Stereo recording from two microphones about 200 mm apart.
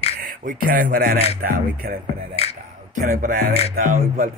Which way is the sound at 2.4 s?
30° left (ahead or behind).